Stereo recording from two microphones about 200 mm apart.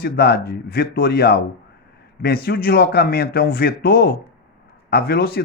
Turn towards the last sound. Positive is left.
turn(degrees=50)  # may be behind; listen again after turning